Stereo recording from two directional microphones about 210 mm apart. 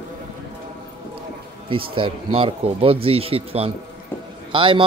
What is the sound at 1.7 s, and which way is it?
A man's voice, 25° right (ahead or behind).